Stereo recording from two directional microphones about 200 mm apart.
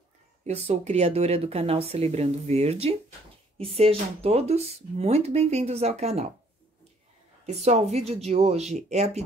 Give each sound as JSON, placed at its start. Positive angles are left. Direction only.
{"t": 0.5, "sound": "speech", "side_deg": -35}
{"t": 7.4, "sound": "speech", "side_deg": -35}